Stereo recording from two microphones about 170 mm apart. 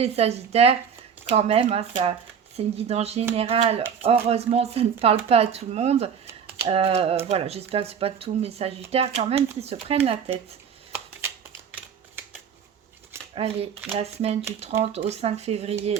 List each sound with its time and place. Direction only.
0.0 s speech: 35° right (ahead or behind)
13.3 s speech: 35° right (ahead or behind)